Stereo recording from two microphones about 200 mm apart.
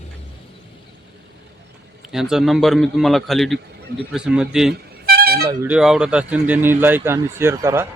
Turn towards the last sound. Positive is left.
turn(degrees=-15)  # may be behind; listen again after turning